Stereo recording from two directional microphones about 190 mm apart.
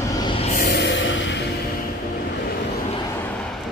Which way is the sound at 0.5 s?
60° left (ahead or behind).